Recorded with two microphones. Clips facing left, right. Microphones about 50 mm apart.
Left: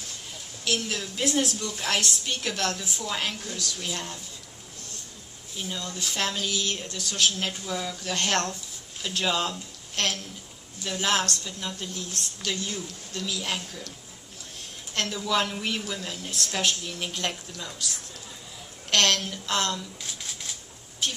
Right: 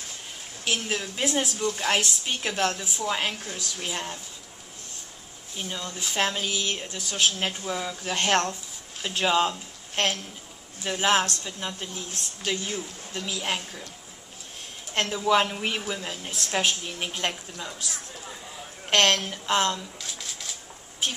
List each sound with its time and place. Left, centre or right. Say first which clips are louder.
0.7 s a woman's voice: right 1 dB; right
5.6 s a woman's voice: even; centre
15.0 s a woman's voice: right 4 dB; right
18.9 s a woman's voice: right 2 dB; right
21.0 s speech: right 1 dB; centre